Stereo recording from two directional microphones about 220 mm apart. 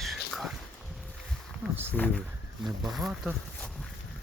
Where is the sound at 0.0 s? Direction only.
Centre (ahead or behind).